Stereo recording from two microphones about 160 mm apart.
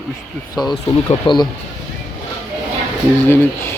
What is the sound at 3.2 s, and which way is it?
Speech, 15° left (ahead or behind).